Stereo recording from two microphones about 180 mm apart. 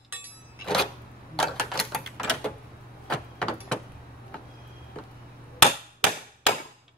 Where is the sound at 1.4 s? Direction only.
5° left (ahead or behind).